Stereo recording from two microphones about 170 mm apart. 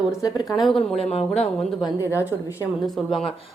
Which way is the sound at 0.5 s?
Centre (ahead or behind).